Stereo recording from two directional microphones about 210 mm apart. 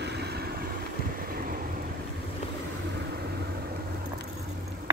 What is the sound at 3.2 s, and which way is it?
Vehicle, 50° right (ahead or behind).